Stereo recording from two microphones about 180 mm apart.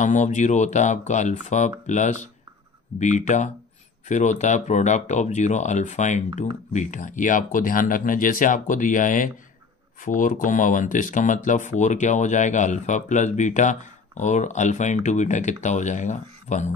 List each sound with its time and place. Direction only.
0.0 s speech: 45° left (ahead or behind)